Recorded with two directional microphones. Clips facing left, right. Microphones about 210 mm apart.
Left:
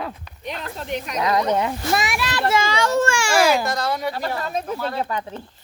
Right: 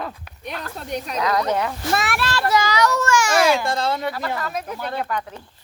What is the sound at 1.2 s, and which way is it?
Speech, 25° left (ahead or behind).